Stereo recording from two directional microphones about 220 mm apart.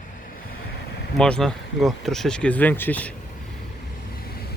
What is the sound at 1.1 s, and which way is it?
Speech, 5° left (ahead or behind).